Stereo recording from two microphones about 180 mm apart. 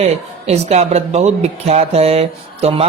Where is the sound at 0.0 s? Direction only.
35° right (ahead or behind).